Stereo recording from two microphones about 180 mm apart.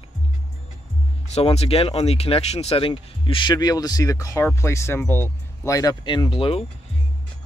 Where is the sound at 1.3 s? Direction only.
35° left (ahead or behind).